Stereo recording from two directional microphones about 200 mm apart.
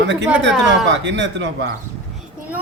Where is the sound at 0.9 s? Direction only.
65° right (ahead or behind).